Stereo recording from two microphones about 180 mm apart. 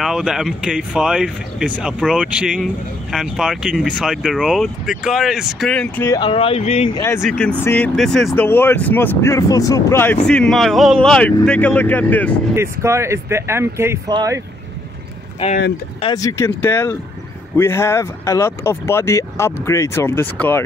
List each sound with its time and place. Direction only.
0.0 s speech: 5° right (ahead or behind)
6.0 s speech: 25° left (ahead or behind)
6.9 s speech: 15° left (ahead or behind)
8.5 s speech: 10° left (ahead or behind)
10.2 s speech: 5° left (ahead or behind)
12.5 s speech: 15° right (ahead or behind)
16.0 s speech: 20° left (ahead or behind)